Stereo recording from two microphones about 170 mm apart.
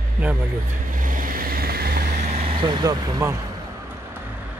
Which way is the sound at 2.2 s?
40° right (ahead or behind).